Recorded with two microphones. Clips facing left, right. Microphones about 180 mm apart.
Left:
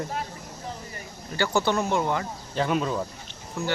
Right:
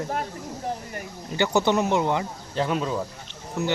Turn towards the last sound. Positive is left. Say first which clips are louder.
# right 3 dB
turn(degrees=-20)  # may be behind; listen again after turning